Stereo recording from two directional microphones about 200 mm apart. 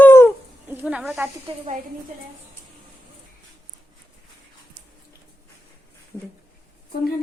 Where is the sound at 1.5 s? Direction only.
25° right (ahead or behind).